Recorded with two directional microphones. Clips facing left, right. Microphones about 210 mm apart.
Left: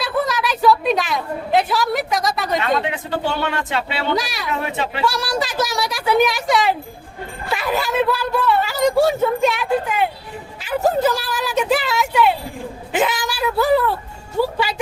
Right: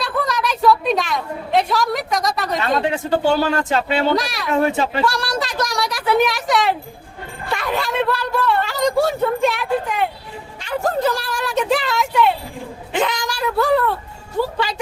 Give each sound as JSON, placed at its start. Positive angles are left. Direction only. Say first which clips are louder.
{"t": 0.0, "sound": "a woman's voice", "louder": "left 1 dB", "side_deg": 0}
{"t": 2.9, "sound": "speech", "louder": "right 6 dB", "side_deg": -40}
{"t": 4.1, "sound": "speech", "louder": "right 2 dB", "side_deg": 0}
{"t": 4.6, "sound": "speech", "louder": "right 5 dB", "side_deg": -40}
{"t": 5.0, "sound": "a man's voice", "louder": "even", "side_deg": 0}